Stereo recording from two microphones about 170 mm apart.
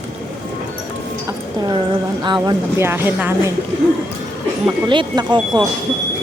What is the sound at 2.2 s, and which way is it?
Speech, 25° right (ahead or behind).